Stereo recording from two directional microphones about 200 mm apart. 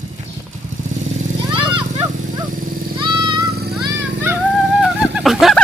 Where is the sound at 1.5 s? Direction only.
25° right (ahead or behind).